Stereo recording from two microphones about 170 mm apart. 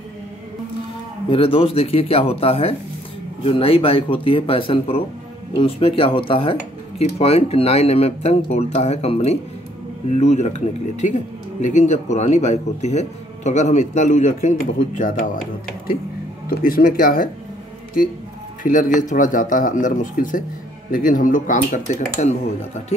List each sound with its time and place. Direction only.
1.3 s a man's voice: 30° left (ahead or behind); by 15.2 s 50° left (ahead or behind)
16.4 s speech: 60° left (ahead or behind)
18.6 s a man's voice: 50° left (ahead or behind)